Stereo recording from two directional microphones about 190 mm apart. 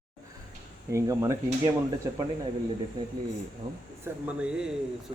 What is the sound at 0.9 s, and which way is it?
Speech, 15° right (ahead or behind).